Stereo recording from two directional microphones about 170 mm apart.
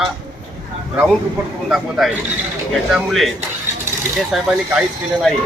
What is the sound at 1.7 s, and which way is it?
Speech, 5° right (ahead or behind).